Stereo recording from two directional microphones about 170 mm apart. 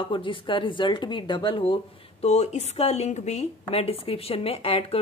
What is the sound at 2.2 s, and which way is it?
Speech, 40° left (ahead or behind).